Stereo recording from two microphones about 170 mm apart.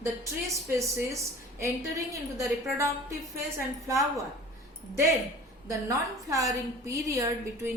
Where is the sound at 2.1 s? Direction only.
15° right (ahead or behind).